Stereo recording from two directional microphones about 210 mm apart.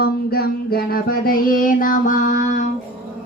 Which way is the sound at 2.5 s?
35° left (ahead or behind).